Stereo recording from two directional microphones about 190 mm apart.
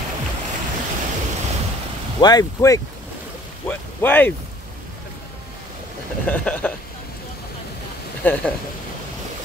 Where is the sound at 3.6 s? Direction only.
10° left (ahead or behind).